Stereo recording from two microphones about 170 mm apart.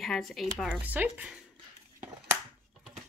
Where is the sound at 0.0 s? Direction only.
Centre (ahead or behind).